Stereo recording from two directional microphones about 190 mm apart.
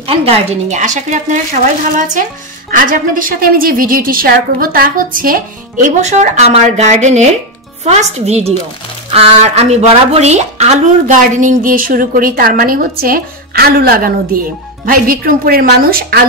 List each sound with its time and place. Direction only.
0.0 s speech: 30° right (ahead or behind); by 16.2 s 55° right (ahead or behind)